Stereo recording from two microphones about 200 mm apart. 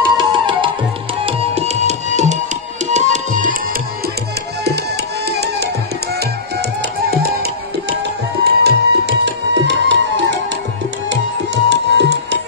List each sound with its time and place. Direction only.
0.0 s music: 25° right (ahead or behind)
1.2 s tabla: 30° right (ahead or behind)
4.6 s tabla: 55° right (ahead or behind)
7.1 s music: 50° right (ahead or behind)
8.6 s tabla: 55° right (ahead or behind)